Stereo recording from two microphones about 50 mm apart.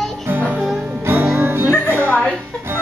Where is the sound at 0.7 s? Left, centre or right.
Right.